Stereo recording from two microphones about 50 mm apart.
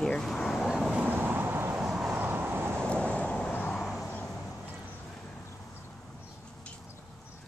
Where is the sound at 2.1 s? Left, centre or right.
Right.